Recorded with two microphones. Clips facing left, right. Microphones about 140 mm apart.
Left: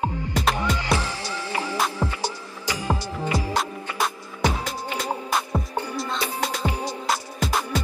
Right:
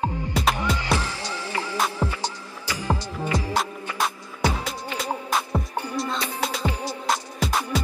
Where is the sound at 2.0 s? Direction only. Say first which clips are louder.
Even; 10° right (ahead or behind).